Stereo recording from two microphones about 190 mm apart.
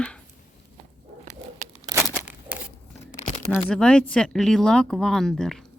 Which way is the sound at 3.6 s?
5° left (ahead or behind).